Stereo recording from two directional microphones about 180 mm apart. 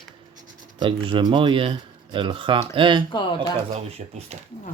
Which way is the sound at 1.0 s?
25° right (ahead or behind).